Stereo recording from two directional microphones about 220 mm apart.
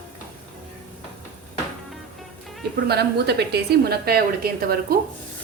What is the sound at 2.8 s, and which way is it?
A woman's voice, 50° right (ahead or behind).